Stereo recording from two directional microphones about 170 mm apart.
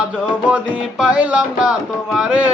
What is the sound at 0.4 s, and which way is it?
Music, 5° right (ahead or behind).